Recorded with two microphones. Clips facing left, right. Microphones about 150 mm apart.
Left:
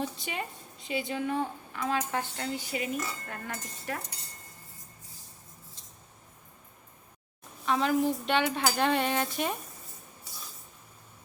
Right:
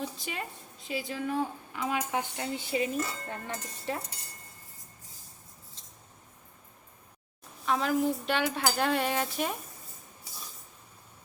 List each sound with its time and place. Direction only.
0.2 s speech: centre (ahead or behind)
1.7 s speech: 15° right (ahead or behind)
2.6 s cutlery: 25° right (ahead or behind)
7.6 s speech: centre (ahead or behind)